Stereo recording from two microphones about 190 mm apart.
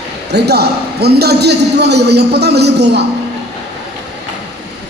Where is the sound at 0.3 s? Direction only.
60° right (ahead or behind).